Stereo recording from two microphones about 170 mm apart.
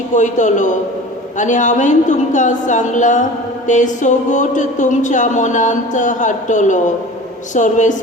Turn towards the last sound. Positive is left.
turn(degrees=45)  # may be behind; listen again after turning